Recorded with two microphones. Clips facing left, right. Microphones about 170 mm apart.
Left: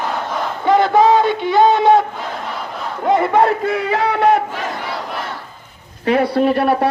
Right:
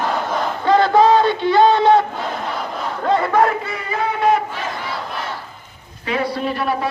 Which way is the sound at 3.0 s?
20° left (ahead or behind).